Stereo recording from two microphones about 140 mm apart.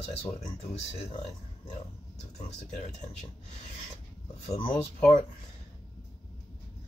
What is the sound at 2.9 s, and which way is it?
Speech, 55° left (ahead or behind).